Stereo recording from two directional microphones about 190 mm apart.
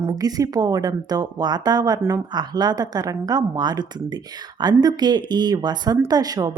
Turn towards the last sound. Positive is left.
turn(degrees=-20)  # may be behind; listen again after turning